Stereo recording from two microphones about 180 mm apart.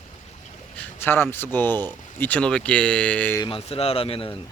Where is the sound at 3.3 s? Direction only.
30° left (ahead or behind).